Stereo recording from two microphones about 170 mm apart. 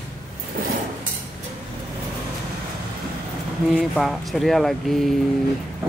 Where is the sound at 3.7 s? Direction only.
Centre (ahead or behind).